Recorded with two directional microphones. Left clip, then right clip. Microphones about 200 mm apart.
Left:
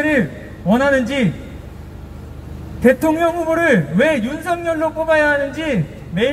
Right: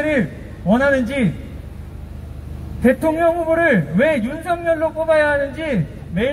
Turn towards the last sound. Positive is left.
turn(degrees=40)  # may be behind; listen again after turning